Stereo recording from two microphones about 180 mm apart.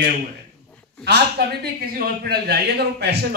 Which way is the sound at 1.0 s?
65° right (ahead or behind).